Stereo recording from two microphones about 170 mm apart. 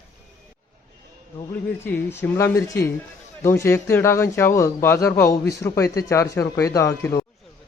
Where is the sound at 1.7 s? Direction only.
10° left (ahead or behind).